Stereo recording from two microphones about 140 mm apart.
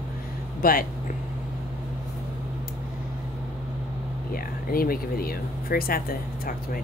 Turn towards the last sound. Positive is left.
turn(degrees=90)